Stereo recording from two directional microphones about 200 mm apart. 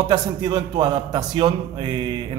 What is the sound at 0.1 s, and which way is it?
A man's voice, 20° right (ahead or behind).